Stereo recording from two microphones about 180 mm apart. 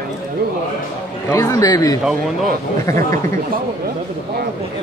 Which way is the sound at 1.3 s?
20° left (ahead or behind).